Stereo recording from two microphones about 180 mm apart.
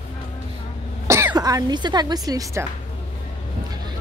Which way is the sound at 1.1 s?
15° right (ahead or behind).